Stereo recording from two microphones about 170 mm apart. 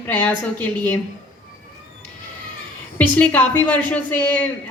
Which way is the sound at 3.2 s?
10° left (ahead or behind).